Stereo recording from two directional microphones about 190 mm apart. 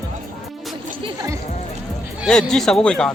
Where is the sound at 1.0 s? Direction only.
15° right (ahead or behind).